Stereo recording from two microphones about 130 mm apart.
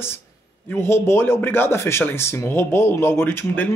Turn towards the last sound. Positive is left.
turn(degrees=15)  # may be behind; listen again after turning